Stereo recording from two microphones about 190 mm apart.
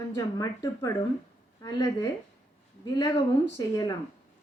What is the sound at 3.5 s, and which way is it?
Speech, 20° left (ahead or behind).